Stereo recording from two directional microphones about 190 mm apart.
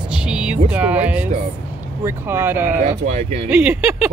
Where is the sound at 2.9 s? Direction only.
35° right (ahead or behind).